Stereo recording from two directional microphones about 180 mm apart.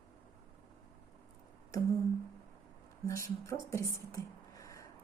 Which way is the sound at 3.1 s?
15° left (ahead or behind).